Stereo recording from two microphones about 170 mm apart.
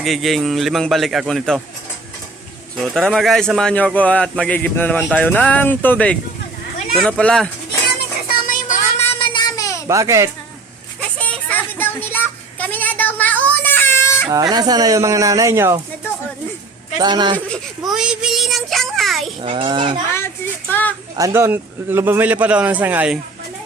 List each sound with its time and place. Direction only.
0.0 s a man's voice: centre (ahead or behind)
2.7 s a man's voice: centre (ahead or behind)
8.4 s child singing: 50° left (ahead or behind)
9.0 s child singing: 30° left (ahead or behind)
9.8 s speech: 20° right (ahead or behind)
11.2 s a sound: 10° left (ahead or behind)
14.3 s fowl: 20° right (ahead or behind)
17.0 s fowl: 25° right (ahead or behind)
17.8 s child singing: 5° right (ahead or behind)
19.4 s a child's voice: 30° right (ahead or behind)
20.1 s child singing: 15° left (ahead or behind)
21.2 s a man's voice: 15° right (ahead or behind)